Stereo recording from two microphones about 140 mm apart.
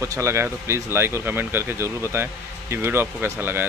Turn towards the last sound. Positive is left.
turn(degrees=-15)  # may be behind; listen again after turning